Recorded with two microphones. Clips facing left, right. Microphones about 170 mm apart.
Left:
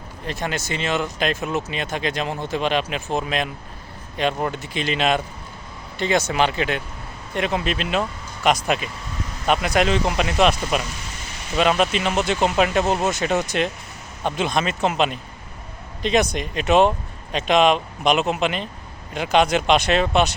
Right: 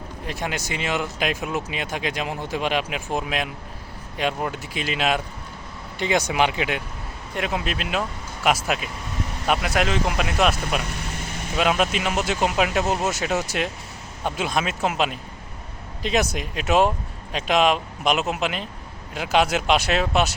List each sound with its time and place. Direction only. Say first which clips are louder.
0.3 s speech: left 2 dB; 10° right (ahead or behind)
10.8 s vehicle: even; 60° right (ahead or behind)
11.5 s speech: left 3 dB; 5° right (ahead or behind)